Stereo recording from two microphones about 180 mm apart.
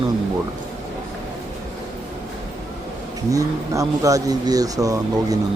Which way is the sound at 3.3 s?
20° right (ahead or behind).